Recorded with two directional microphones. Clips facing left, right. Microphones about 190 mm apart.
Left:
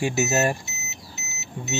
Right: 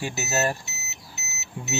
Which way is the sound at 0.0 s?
15° left (ahead or behind).